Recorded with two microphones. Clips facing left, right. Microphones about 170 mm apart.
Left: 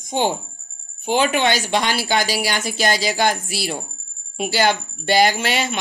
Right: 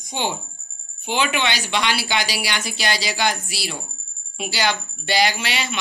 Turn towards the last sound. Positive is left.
turn(degrees=45)  # may be behind; listen again after turning